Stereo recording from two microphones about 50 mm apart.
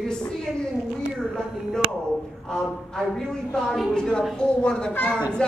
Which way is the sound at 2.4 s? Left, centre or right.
Centre.